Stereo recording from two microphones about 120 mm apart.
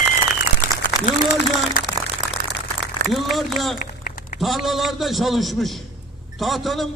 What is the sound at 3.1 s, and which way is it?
A man's voice, centre (ahead or behind).